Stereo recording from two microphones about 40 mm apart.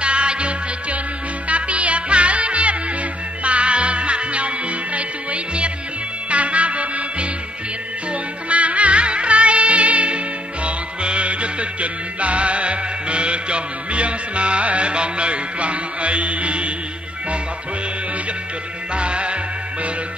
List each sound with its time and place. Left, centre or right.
0.0 s music: right
18.9 s music: right